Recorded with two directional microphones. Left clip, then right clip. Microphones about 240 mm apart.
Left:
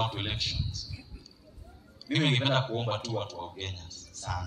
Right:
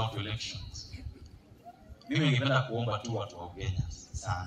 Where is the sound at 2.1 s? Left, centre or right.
Left.